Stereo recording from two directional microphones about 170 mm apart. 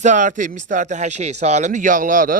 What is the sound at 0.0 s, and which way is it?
Speech, 45° right (ahead or behind).